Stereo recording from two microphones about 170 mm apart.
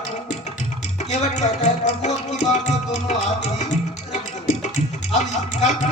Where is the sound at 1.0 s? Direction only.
40° left (ahead or behind).